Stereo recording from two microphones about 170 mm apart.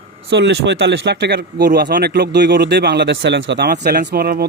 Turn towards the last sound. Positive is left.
turn(degrees=-65)  # may be behind; listen again after turning